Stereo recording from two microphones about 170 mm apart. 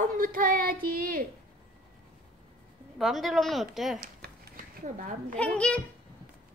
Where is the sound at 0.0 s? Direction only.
55° right (ahead or behind).